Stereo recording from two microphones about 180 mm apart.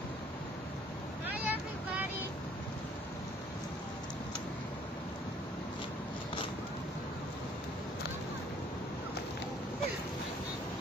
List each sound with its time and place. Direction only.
1.2 s vehicle: 10° right (ahead or behind)